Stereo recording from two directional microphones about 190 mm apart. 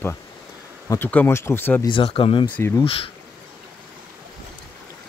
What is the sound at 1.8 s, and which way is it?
Speech, 25° left (ahead or behind).